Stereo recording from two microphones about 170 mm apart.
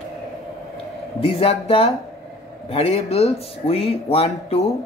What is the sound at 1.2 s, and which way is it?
Speech, 35° left (ahead or behind).